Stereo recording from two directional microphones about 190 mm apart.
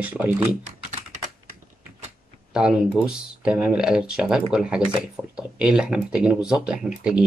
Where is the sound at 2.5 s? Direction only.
5° right (ahead or behind).